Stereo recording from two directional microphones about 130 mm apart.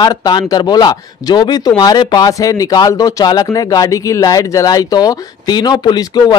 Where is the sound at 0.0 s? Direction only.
30° left (ahead or behind).